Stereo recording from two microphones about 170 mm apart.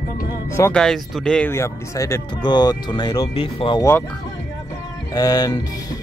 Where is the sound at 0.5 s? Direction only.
15° left (ahead or behind).